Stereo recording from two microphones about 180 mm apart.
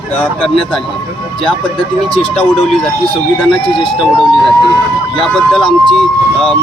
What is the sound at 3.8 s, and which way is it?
Speech, centre (ahead or behind).